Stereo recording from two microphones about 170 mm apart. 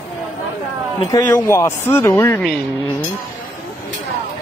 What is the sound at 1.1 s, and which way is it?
Speech, 20° left (ahead or behind).